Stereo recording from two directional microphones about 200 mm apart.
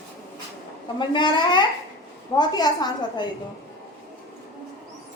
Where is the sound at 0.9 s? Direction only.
25° left (ahead or behind).